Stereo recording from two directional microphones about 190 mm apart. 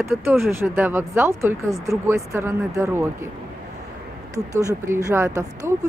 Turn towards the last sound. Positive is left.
turn(degrees=-15)  # may be behind; listen again after turning